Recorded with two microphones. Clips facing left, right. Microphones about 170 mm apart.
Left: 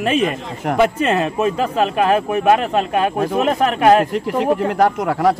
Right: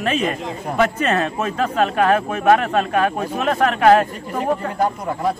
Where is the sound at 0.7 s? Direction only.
15° left (ahead or behind).